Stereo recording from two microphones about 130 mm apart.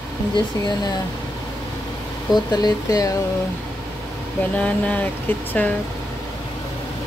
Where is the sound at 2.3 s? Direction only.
30° left (ahead or behind).